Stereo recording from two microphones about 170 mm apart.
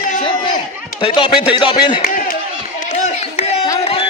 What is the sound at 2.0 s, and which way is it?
Speech, 55° left (ahead or behind).